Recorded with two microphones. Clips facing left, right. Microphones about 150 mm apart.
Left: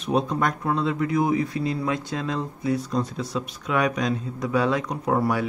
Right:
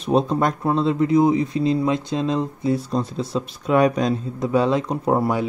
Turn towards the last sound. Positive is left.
turn(degrees=-25)  # may be behind; listen again after turning